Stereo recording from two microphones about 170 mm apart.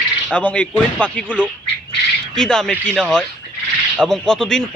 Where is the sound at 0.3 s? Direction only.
5° left (ahead or behind).